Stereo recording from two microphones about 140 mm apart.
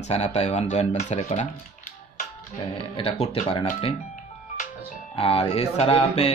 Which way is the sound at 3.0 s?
45° left (ahead or behind).